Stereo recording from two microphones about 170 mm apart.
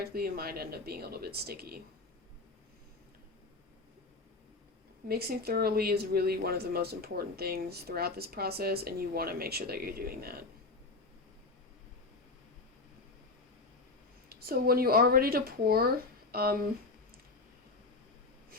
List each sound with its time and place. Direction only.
0.0 s speech: 60° right (ahead or behind)
5.0 s speech: 65° right (ahead or behind)
14.3 s speech: 65° right (ahead or behind)